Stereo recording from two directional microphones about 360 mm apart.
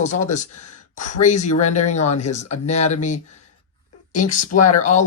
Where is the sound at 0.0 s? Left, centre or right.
Centre.